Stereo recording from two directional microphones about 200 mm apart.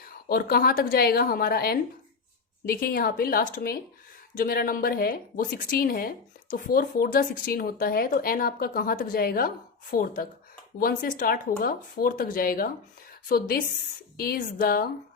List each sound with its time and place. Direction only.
0.1 s speech: 50° left (ahead or behind)